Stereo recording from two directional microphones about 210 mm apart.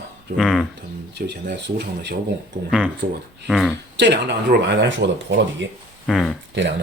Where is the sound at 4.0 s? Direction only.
55° right (ahead or behind).